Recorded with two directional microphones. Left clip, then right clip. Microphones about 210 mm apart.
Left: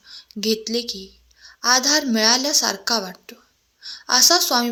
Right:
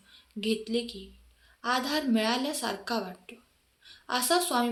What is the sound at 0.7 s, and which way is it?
A woman's voice, 40° left (ahead or behind).